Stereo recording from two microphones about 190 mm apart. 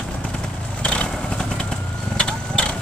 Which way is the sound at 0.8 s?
5° left (ahead or behind).